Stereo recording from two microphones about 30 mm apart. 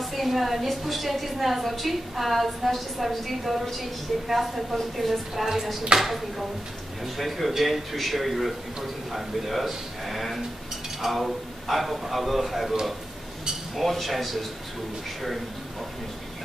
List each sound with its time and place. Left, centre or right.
0.0 s a woman's voice: centre
13.7 s a woman's voice: centre